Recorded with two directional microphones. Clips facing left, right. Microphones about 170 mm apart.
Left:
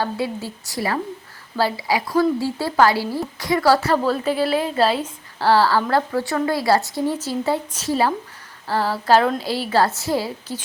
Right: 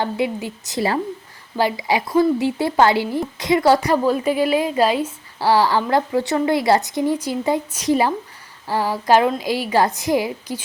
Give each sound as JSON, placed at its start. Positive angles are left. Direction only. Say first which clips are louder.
{"t": 0.0, "sound": "a woman's voice", "louder": "right 2 dB", "side_deg": -20}